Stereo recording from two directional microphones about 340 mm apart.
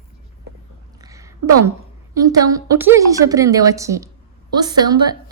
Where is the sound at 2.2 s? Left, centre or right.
Centre.